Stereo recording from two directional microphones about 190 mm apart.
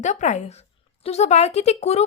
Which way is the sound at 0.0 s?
40° left (ahead or behind).